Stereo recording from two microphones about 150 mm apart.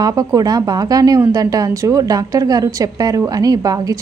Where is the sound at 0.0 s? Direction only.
25° right (ahead or behind).